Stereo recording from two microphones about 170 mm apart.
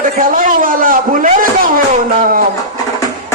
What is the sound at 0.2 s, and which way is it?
A man's voice, 55° right (ahead or behind).